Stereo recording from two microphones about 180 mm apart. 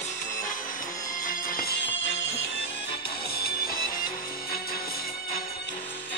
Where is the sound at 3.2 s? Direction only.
60° left (ahead or behind).